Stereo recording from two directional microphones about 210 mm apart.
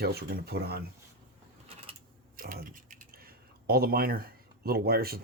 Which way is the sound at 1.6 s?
30° right (ahead or behind).